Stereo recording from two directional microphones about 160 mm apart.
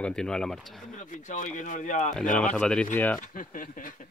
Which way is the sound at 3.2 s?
55° left (ahead or behind).